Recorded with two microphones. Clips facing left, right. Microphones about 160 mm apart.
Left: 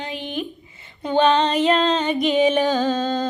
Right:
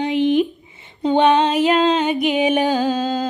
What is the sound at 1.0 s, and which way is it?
Music, 20° right (ahead or behind).